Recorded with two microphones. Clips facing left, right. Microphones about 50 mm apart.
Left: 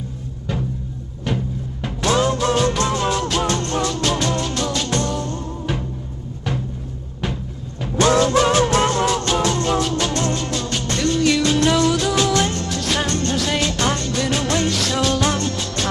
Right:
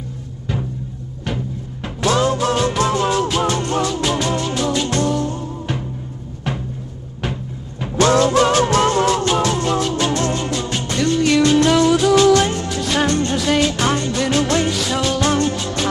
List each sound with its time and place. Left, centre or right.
2.2 s music: centre
8.2 s music: centre
10.0 s music: centre